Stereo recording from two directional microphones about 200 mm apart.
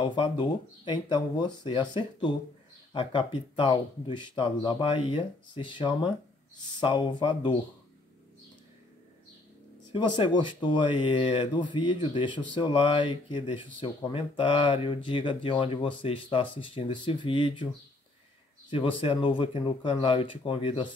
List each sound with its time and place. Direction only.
0.0 s speech: 25° left (ahead or behind)
9.9 s speech: 25° left (ahead or behind)
18.7 s speech: 25° left (ahead or behind)